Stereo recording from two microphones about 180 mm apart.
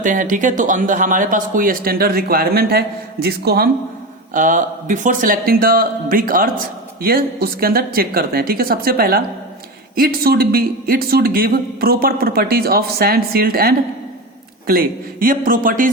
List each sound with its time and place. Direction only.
0.0 s speech: 45° right (ahead or behind); by 3.7 s 60° right (ahead or behind)
4.4 s a man's voice: 45° right (ahead or behind)